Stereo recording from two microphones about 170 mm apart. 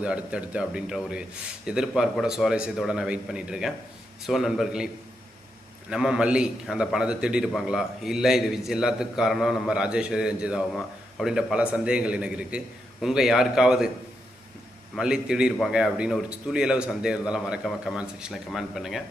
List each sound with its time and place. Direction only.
0.0 s a man's voice: 5° right (ahead or behind)
5.9 s a man's voice: 5° right (ahead or behind)
14.9 s a man's voice: 5° right (ahead or behind)